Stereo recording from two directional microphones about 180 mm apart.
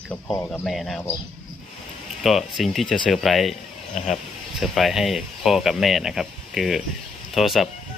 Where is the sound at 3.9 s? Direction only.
40° left (ahead or behind).